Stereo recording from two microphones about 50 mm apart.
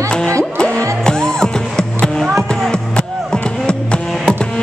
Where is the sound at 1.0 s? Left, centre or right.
Centre.